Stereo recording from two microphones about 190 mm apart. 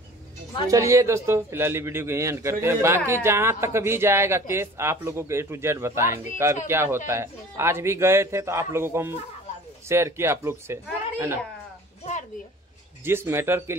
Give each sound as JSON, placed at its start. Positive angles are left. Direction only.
{"t": 0.7, "sound": "a man's voice", "side_deg": -15}
{"t": 12.0, "sound": "a sound", "side_deg": 35}
{"t": 13.0, "sound": "a man's voice", "side_deg": -15}